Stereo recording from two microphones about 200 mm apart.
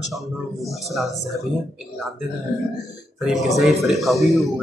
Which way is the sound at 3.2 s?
Centre (ahead or behind).